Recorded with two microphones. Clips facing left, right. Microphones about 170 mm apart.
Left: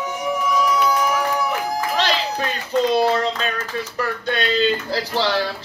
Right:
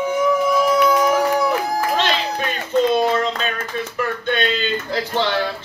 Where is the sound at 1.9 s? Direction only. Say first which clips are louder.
Right 1 dB; 35° left (ahead or behind).